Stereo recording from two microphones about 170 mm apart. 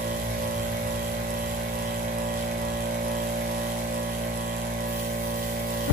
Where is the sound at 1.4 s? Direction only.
55° right (ahead or behind).